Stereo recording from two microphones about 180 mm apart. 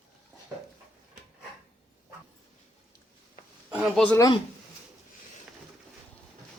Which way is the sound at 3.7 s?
5° right (ahead or behind).